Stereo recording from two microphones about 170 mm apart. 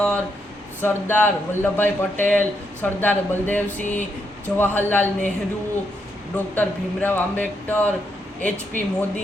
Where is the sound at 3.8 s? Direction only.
45° left (ahead or behind).